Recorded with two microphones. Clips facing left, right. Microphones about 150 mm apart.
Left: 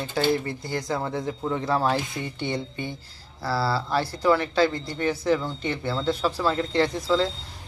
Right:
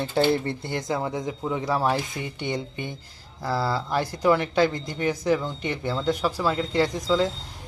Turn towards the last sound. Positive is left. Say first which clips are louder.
# even
turn(degrees=-15)  # may be behind; listen again after turning